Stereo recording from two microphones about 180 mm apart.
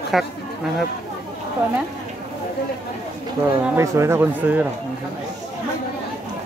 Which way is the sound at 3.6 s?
15° right (ahead or behind).